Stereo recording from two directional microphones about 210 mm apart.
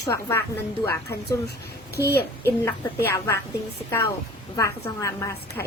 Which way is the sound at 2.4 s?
10° left (ahead or behind).